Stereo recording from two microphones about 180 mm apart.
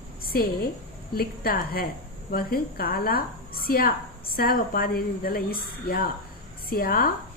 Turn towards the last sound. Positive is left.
turn(degrees=55)  # may be behind; listen again after turning